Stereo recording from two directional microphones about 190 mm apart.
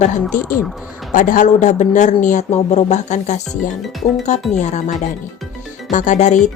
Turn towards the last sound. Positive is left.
turn(degrees=40)  # may be behind; listen again after turning